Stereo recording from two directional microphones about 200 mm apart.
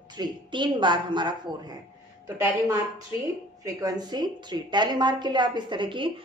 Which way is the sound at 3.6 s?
20° right (ahead or behind).